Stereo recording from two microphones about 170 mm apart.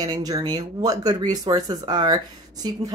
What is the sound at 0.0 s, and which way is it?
Speech, 20° right (ahead or behind).